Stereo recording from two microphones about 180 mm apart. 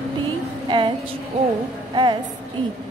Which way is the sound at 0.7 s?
25° right (ahead or behind).